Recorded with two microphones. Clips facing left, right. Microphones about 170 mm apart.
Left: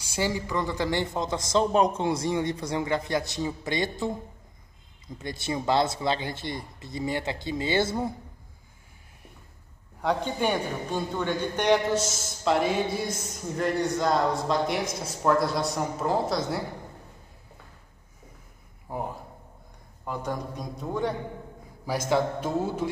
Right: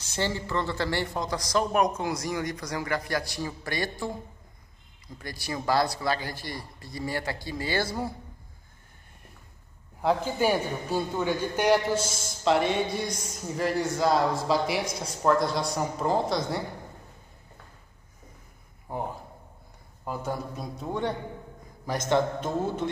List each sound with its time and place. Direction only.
0.0 s speech: 10° left (ahead or behind)
10.0 s a man's voice: 5° right (ahead or behind)
18.9 s a man's voice: centre (ahead or behind)